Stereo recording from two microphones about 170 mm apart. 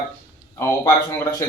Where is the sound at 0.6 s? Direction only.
15° left (ahead or behind).